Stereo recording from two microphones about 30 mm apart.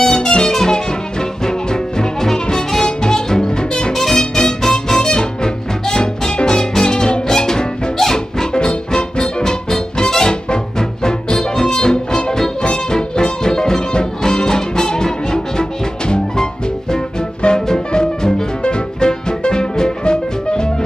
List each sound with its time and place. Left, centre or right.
0.0 s music: centre
3.9 s music: centre
8.5 s music: left
17.4 s music: left